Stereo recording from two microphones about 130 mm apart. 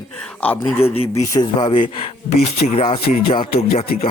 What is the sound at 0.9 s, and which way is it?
Speech, 50° left (ahead or behind).